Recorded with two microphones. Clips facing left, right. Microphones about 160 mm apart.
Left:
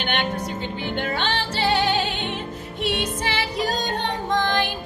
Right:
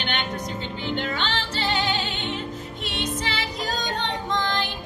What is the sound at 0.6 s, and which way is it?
Music, 50° left (ahead or behind).